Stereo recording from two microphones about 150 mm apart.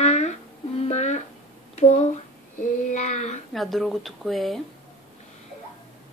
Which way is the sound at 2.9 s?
50° left (ahead or behind).